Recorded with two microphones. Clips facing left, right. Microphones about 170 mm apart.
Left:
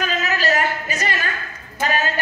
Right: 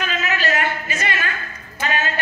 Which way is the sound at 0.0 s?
40° left (ahead or behind).